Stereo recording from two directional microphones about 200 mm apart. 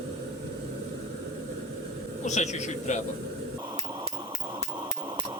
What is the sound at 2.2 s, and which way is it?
Speech, 35° left (ahead or behind).